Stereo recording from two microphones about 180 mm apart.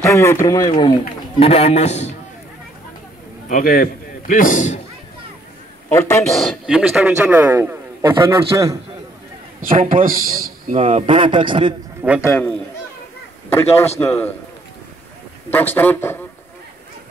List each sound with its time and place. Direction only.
0.0 s a man's voice: 15° left (ahead or behind)
1.4 s a man's voice: 35° left (ahead or behind)
3.4 s speech: 50° left (ahead or behind)
5.9 s a man's voice: 15° left (ahead or behind)
6.3 s a man's voice: centre (ahead or behind); by 8.7 s 15° right (ahead or behind)
9.8 s a man's voice: 50° right (ahead or behind)
10.8 s speech: 35° right (ahead or behind)
12.0 s a man's voice: 10° right (ahead or behind)
12.3 s a man's voice: 10° left (ahead or behind)
15.5 s a man's voice: 10° left (ahead or behind)